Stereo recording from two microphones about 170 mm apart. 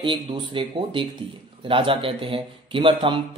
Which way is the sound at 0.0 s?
30° right (ahead or behind).